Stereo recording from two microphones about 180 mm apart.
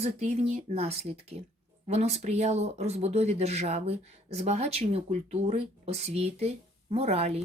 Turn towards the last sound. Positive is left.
turn(degrees=-35)  # may be behind; listen again after turning